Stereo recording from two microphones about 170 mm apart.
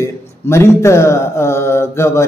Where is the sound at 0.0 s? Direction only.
15° left (ahead or behind).